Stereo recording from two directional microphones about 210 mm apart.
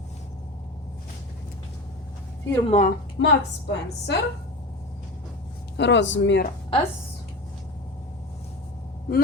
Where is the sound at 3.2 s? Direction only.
60° left (ahead or behind).